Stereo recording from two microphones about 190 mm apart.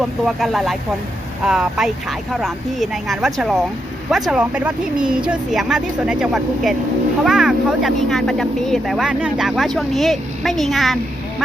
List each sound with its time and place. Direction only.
0.0 s speech: centre (ahead or behind)